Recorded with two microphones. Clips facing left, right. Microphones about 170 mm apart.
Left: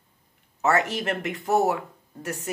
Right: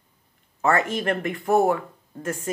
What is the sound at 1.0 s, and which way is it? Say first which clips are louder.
Speech: right 3 dB; 20° left (ahead or behind).